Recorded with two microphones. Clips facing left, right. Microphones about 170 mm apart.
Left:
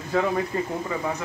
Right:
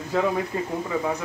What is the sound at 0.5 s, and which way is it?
Speech, 5° right (ahead or behind).